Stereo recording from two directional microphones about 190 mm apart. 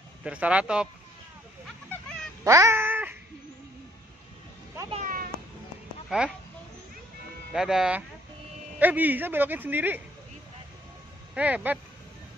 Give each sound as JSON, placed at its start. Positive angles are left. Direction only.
{"t": 0.2, "sound": "speech", "side_deg": -5}
{"t": 1.9, "sound": "a sound", "side_deg": 5}
{"t": 2.4, "sound": "cat", "side_deg": -15}
{"t": 4.9, "sound": "cat", "side_deg": -45}
{"t": 6.0, "sound": "speech", "side_deg": -5}
{"t": 7.5, "sound": "speech", "side_deg": 0}
{"t": 11.3, "sound": "speech", "side_deg": -5}